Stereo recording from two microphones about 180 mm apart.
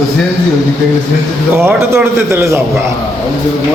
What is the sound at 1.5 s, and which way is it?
A man's voice, 15° right (ahead or behind).